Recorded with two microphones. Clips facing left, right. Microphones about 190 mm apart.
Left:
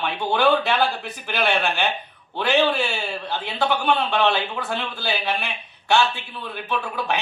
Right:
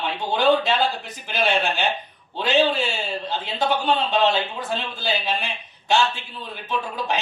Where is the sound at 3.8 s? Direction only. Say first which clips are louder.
Even; 20° right (ahead or behind).